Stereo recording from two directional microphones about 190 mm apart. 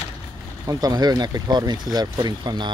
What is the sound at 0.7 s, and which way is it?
Speech, 20° right (ahead or behind).